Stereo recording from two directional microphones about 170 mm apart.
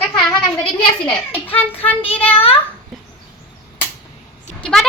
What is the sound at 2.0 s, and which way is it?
Speech, 35° left (ahead or behind).